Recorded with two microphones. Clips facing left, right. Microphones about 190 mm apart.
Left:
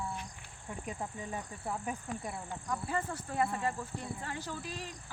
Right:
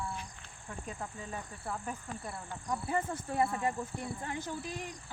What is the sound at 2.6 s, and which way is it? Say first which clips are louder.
Speech: right 2 dB; 20° right (ahead or behind).